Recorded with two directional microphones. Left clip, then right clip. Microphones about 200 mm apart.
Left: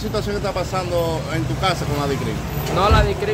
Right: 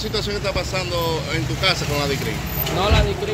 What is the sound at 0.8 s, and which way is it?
Speech, 55° left (ahead or behind).